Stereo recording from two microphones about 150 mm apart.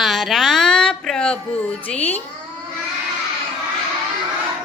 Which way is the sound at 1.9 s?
10° left (ahead or behind).